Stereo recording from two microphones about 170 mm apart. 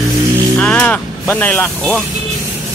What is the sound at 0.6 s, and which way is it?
Speech, 5° left (ahead or behind).